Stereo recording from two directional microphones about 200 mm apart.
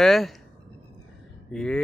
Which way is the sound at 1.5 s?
5° left (ahead or behind).